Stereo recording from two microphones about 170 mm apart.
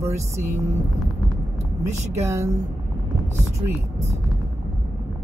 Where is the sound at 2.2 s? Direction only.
15° right (ahead or behind).